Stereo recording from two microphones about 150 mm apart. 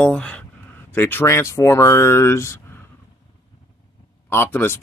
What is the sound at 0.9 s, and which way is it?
Speech, 15° left (ahead or behind).